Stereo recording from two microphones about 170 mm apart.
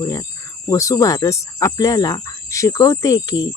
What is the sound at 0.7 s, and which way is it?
Speech, 20° left (ahead or behind).